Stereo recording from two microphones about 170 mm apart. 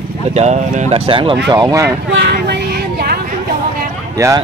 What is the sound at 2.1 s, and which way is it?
Vehicle, 85° right.